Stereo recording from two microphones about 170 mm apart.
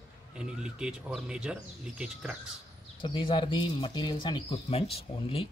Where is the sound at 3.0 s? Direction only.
30° left (ahead or behind).